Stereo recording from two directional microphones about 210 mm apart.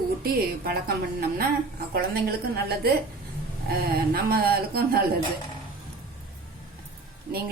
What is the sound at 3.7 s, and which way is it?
A woman's voice, 45° right (ahead or behind).